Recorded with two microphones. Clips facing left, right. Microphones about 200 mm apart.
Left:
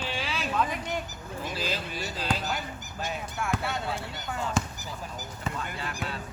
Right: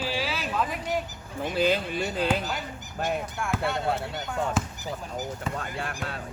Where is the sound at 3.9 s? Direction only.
60° right (ahead or behind).